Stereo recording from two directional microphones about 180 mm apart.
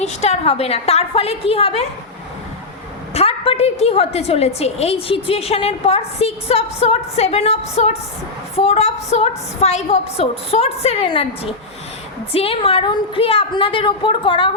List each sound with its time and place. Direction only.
0.0 s a woman's voice: 35° left (ahead or behind)
3.2 s a woman's voice: 30° left (ahead or behind)